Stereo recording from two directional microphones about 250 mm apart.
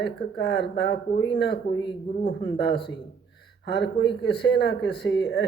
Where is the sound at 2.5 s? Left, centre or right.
Left.